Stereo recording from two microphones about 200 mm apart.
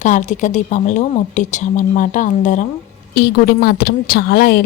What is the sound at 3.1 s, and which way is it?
A woman's voice, 55° left (ahead or behind).